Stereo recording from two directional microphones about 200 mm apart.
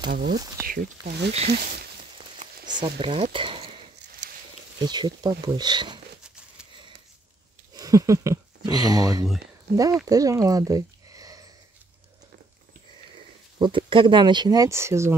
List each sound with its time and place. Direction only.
0.1 s speech: 60° right (ahead or behind)
0.7 s speech: 45° right (ahead or behind)
2.6 s a sound: 20° right (ahead or behind)
3.0 s speech: 25° right (ahead or behind)
4.2 s a sound: 60° right (ahead or behind)
4.7 s speech: 20° right (ahead or behind)
7.7 s speech: 15° right (ahead or behind)
10.0 s a sound: 15° right (ahead or behind)
13.6 s speech: 25° right (ahead or behind)